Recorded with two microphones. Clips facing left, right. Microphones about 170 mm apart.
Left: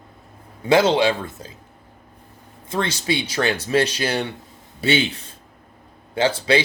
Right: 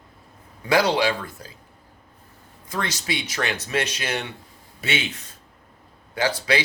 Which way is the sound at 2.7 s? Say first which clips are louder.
Left 5 dB; 30° left (ahead or behind).